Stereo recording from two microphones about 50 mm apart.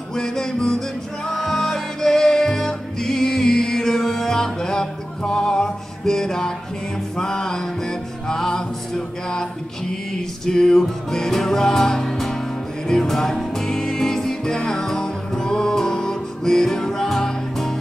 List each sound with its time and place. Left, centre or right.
0.1 s music: centre